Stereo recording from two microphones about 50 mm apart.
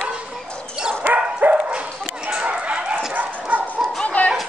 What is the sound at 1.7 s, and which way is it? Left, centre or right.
Dog, right.